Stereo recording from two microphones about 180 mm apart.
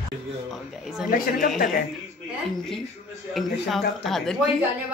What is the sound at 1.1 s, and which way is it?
Speech, 50° left (ahead or behind).